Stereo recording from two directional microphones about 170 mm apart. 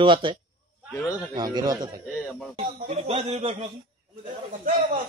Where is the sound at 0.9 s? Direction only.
20° left (ahead or behind).